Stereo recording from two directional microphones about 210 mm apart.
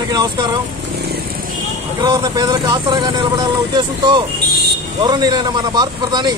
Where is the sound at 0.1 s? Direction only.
20° right (ahead or behind).